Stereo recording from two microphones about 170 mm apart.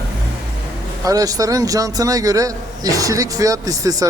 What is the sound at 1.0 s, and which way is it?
A man's voice, 20° right (ahead or behind).